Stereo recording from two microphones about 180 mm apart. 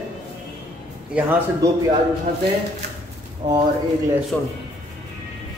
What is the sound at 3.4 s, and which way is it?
Speech, 25° right (ahead or behind).